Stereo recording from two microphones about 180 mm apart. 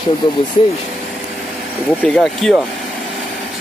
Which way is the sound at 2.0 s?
5° left (ahead or behind).